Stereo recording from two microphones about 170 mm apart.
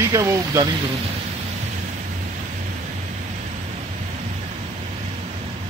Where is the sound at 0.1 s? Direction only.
20° right (ahead or behind).